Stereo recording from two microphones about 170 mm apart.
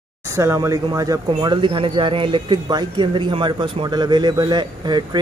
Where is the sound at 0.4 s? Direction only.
20° right (ahead or behind).